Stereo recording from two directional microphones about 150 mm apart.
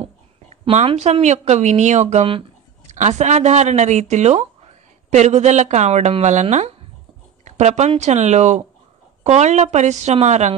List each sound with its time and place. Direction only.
0.7 s speech: 45° right (ahead or behind)